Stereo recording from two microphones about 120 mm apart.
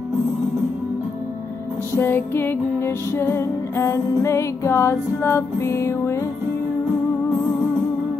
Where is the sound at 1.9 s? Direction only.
20° left (ahead or behind).